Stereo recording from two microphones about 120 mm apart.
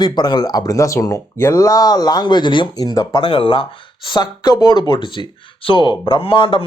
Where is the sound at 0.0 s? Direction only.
35° left (ahead or behind).